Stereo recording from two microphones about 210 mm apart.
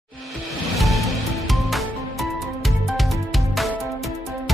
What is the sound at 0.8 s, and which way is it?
Music, centre (ahead or behind).